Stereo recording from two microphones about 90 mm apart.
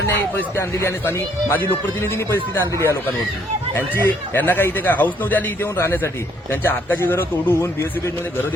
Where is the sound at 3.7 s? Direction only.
20° left (ahead or behind).